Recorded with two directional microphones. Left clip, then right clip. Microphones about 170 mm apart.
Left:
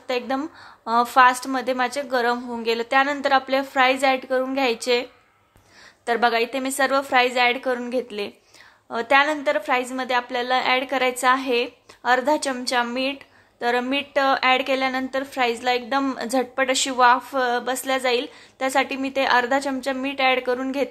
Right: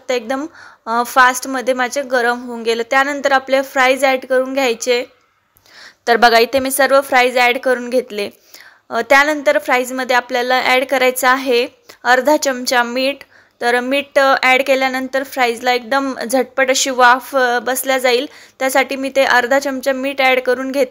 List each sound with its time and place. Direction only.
0.0 s a woman's voice: 20° right (ahead or behind)
6.0 s a woman's voice: 40° right (ahead or behind); by 20.9 s 20° right (ahead or behind)